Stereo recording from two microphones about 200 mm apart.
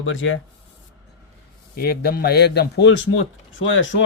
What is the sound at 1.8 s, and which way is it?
A man's voice, 50° left (ahead or behind).